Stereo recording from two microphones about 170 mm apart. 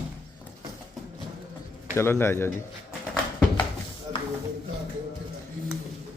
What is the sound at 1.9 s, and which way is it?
Speech, 15° left (ahead or behind).